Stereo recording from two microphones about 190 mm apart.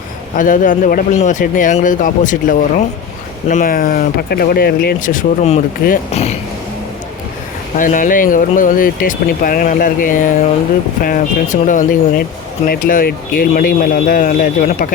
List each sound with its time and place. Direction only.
0.3 s speech: 45° left (ahead or behind)
7.8 s speech: 45° left (ahead or behind)